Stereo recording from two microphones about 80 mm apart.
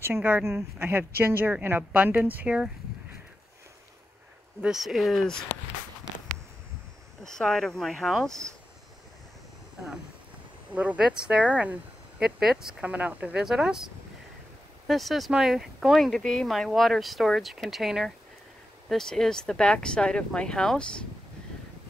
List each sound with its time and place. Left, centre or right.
0.5 s speech: right; by 2.7 s centre
4.6 s speech: centre
7.2 s speech: centre
10.7 s speech: centre
12.8 s speech: centre
13.4 s speech: centre
14.9 s speech: centre